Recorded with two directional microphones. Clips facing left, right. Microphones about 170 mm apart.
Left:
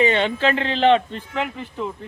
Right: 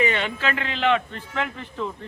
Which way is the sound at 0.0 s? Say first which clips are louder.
Left 5 dB; 30° left (ahead or behind).